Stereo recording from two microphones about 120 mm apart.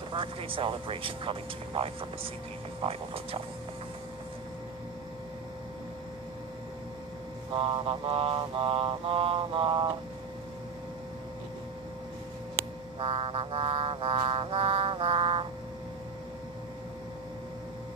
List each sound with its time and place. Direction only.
0.1 s music: 45° right (ahead or behind)
7.5 s music: 45° right (ahead or behind)
13.0 s music: 50° right (ahead or behind)